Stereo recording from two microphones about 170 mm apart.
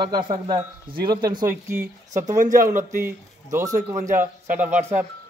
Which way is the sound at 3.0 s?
15° right (ahead or behind).